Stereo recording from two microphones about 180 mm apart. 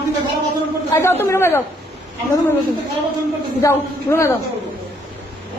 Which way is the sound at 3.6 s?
15° left (ahead or behind).